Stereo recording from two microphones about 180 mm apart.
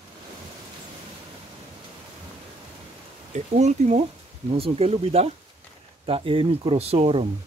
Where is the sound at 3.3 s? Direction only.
40° right (ahead or behind).